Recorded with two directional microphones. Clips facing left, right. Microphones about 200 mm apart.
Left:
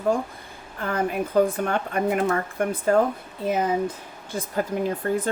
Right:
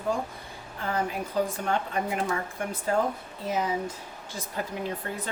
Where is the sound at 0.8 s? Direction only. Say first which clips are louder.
Left 5 dB; 55° left (ahead or behind).